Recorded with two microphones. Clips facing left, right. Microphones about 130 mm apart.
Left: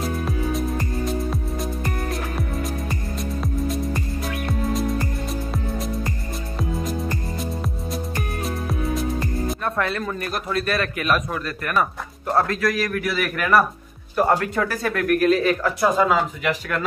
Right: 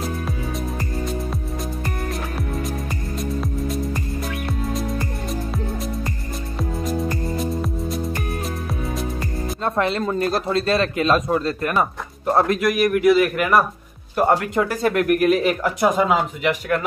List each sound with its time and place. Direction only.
2.3 s music: centre (ahead or behind)
6.6 s music: centre (ahead or behind)
9.6 s a man's voice: 25° right (ahead or behind)